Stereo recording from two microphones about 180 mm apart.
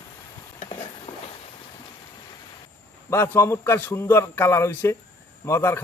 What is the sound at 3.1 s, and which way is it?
A man's voice, 15° left (ahead or behind).